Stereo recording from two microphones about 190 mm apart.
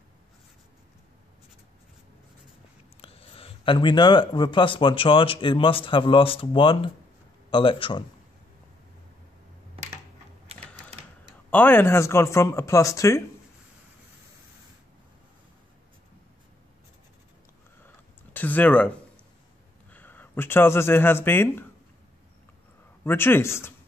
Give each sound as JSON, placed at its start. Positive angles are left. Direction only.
{"t": 3.0, "sound": "speech", "side_deg": 30}
{"t": 11.5, "sound": "speech", "side_deg": 10}
{"t": 18.3, "sound": "a sound", "side_deg": 10}
{"t": 19.9, "sound": "speech", "side_deg": 10}
{"t": 23.0, "sound": "speech", "side_deg": 10}